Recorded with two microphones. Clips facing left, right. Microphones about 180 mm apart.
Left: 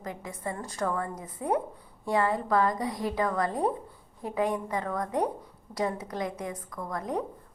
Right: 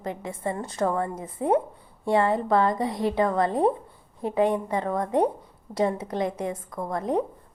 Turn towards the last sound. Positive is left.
turn(degrees=-25)  # may be behind; listen again after turning